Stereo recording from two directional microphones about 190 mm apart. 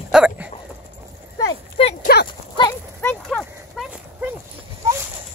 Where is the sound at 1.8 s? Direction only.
30° left (ahead or behind).